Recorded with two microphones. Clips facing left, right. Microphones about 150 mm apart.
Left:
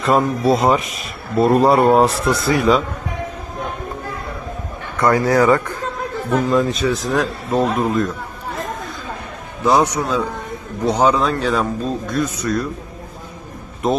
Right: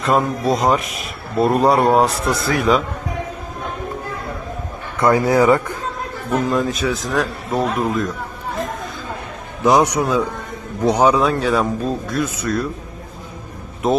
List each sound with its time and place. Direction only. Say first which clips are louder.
0.0 s speech: left 2 dB; centre (ahead or behind)
4.9 s speech: even; 25° right (ahead or behind)
6.5 s speech: left 2 dB; centre (ahead or behind)
9.6 s speech: right 1 dB; 15° right (ahead or behind)